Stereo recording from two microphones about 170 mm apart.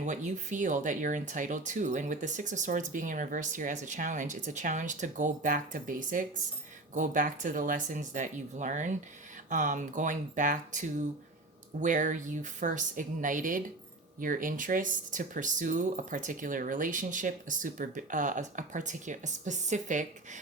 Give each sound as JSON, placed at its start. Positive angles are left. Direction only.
{"t": 0.0, "sound": "speech", "side_deg": -45}